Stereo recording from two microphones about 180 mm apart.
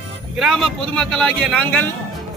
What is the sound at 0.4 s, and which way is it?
A man's voice, centre (ahead or behind).